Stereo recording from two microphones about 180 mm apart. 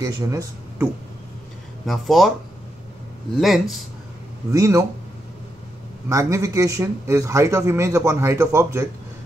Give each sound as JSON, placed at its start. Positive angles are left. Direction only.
{"t": 0.3, "sound": "speech", "side_deg": -20}
{"t": 1.9, "sound": "speech", "side_deg": 0}
{"t": 3.3, "sound": "speech", "side_deg": 0}
{"t": 4.5, "sound": "speech", "side_deg": -15}
{"t": 6.0, "sound": "speech", "side_deg": -15}